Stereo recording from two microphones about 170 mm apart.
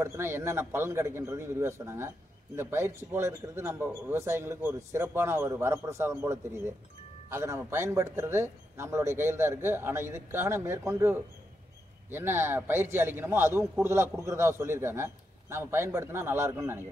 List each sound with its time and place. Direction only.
0.0 s a man's voice: 15° right (ahead or behind)